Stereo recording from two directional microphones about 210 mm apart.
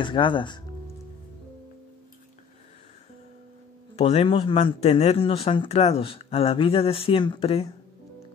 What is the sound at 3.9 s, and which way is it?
Speech, 30° left (ahead or behind).